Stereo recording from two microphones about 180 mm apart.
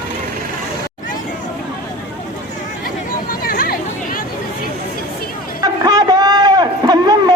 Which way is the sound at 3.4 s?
55° left (ahead or behind).